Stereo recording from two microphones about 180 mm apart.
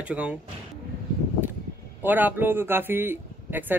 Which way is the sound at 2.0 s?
10° right (ahead or behind).